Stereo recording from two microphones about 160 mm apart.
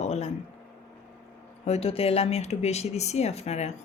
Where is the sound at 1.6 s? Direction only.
40° left (ahead or behind).